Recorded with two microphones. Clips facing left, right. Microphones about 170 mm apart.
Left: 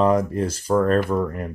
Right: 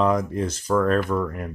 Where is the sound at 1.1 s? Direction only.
20° left (ahead or behind).